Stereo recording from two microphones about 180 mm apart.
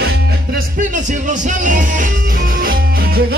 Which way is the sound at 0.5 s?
45° right (ahead or behind).